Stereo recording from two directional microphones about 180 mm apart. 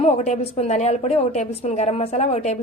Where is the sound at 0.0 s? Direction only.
35° left (ahead or behind).